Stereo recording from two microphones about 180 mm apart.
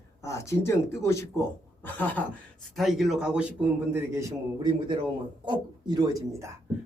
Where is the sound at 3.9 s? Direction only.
15° right (ahead or behind).